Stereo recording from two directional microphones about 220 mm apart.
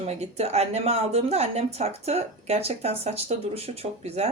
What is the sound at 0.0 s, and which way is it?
Speech, 30° right (ahead or behind).